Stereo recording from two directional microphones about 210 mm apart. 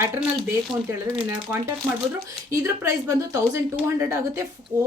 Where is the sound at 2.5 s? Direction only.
15° right (ahead or behind).